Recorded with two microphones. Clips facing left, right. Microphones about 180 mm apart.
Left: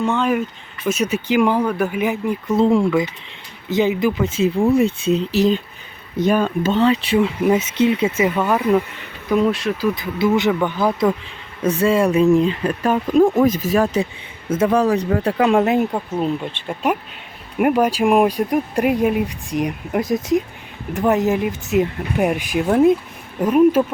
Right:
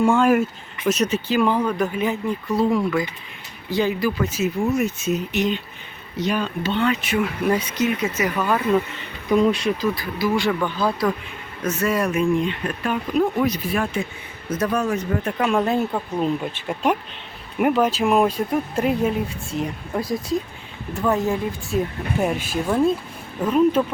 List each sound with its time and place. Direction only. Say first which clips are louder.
0.0 s speech: right 2 dB; 10° right (ahead or behind)
0.9 s speech: left 1 dB; 5° left (ahead or behind); by 5.6 s 35° left (ahead or behind)
6.1 s speech: left 6 dB; 50° left (ahead or behind)
6.8 s speech: left 5 dB; 30° left (ahead or behind)
9.3 s speech: even; centre (ahead or behind)
9.8 s speech: left 4 dB; 20° left (ahead or behind)
11.6 s speech: left 6 dB; 30° left (ahead or behind)
14.5 s speech: left 6 dB; 30° left (ahead or behind)
15.6 s speech: left 4 dB; 15° left (ahead or behind)
16.1 s speech: right 1 dB; centre (ahead or behind)